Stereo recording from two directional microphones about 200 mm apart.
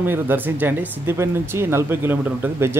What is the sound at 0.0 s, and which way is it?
Speech, 10° right (ahead or behind).